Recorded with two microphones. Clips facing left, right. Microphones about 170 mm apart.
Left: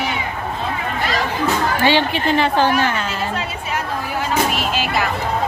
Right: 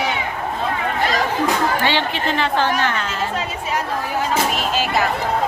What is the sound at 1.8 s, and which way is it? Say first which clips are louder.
A woman's voice: left 4 dB; 10° left (ahead or behind).